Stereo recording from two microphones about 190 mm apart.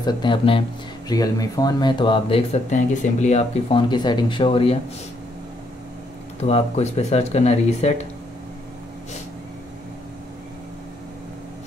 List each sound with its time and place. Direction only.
0.0 s speech: 25° left (ahead or behind)
6.4 s speech: 35° left (ahead or behind)